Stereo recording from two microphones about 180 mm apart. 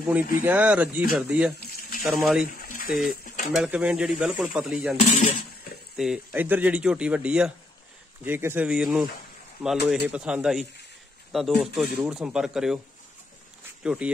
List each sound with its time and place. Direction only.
0.1 s speech: 10° right (ahead or behind)
2.6 s pigeon: 50° left (ahead or behind)
3.5 s speech: 5° right (ahead or behind)
5.9 s speech: 5° right (ahead or behind)
13.8 s speech: 5° right (ahead or behind)